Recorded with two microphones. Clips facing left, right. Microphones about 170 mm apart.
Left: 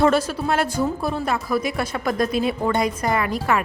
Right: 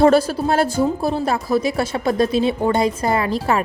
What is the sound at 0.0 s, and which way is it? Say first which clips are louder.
A woman's voice: right 5 dB; 30° right (ahead or behind).